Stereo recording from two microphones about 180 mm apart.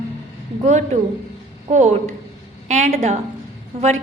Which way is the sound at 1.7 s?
40° right (ahead or behind).